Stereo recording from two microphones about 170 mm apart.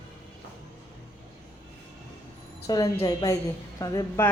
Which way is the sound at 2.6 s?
20° left (ahead or behind).